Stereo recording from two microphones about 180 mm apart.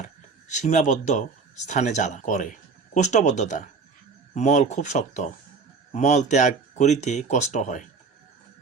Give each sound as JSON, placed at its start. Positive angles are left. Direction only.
{"t": 0.0, "sound": "speech", "side_deg": 40}